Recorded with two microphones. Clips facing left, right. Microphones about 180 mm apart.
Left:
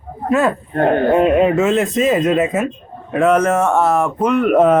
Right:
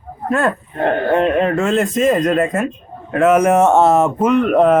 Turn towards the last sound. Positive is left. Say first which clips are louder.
# even
turn(degrees=0)  # may be behind; listen again after turning